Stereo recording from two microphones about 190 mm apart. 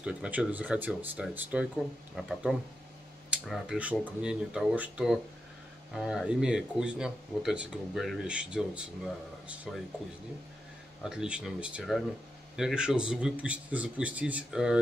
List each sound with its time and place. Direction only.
0.0 s speech: 5° right (ahead or behind)
11.0 s speech: 5° right (ahead or behind)